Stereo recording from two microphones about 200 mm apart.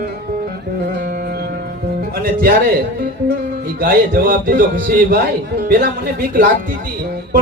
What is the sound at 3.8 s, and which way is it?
A man's voice, 45° right (ahead or behind).